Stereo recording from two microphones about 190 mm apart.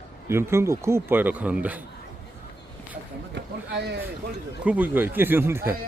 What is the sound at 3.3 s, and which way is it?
Speech, 60° right (ahead or behind).